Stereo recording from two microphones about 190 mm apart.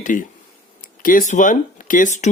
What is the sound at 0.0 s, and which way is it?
Speech, 40° left (ahead or behind).